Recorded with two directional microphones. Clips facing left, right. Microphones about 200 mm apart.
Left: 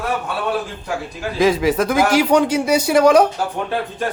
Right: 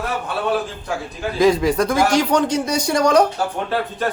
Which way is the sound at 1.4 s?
Centre (ahead or behind).